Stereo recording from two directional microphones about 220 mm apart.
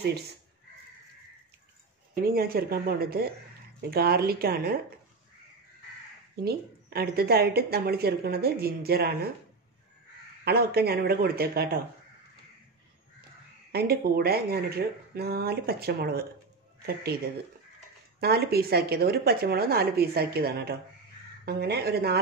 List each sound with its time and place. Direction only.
0.0 s a woman's voice: 45° right (ahead or behind)
2.2 s a woman's voice: 40° right (ahead or behind)
6.3 s a woman's voice: 45° right (ahead or behind)
10.4 s a woman's voice: 45° right (ahead or behind)
13.7 s a woman's voice: 45° right (ahead or behind)
18.2 s a woman's voice: 45° right (ahead or behind)